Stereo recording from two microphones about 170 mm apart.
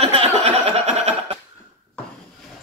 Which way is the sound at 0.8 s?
45° right (ahead or behind).